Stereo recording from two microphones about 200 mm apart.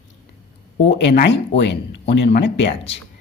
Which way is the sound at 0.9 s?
55° left (ahead or behind).